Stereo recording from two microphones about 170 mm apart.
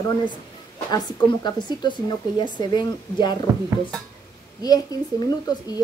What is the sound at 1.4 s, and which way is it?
A woman's voice, 25° left (ahead or behind).